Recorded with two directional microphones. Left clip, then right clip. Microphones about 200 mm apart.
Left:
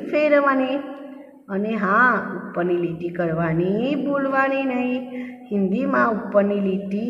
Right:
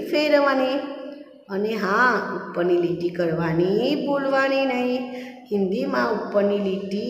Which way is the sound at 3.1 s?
10° left (ahead or behind).